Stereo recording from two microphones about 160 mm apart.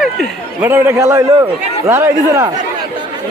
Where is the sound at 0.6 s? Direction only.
15° right (ahead or behind).